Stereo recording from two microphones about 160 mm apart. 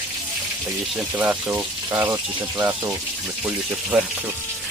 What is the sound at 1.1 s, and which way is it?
Speech, 10° right (ahead or behind).